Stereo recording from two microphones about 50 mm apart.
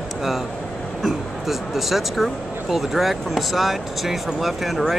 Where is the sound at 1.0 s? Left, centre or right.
Centre.